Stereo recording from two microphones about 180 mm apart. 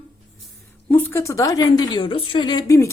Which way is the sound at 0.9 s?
10° left (ahead or behind).